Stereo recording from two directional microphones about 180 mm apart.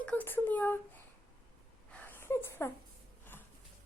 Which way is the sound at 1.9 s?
10° left (ahead or behind).